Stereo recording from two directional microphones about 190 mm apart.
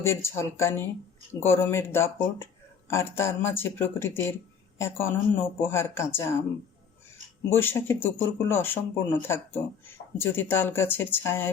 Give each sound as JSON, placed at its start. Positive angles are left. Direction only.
{"t": 0.0, "sound": "speech", "side_deg": 15}
{"t": 7.5, "sound": "speech", "side_deg": 10}